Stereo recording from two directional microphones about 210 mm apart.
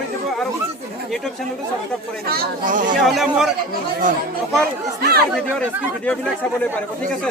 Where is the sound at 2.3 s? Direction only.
40° right (ahead or behind).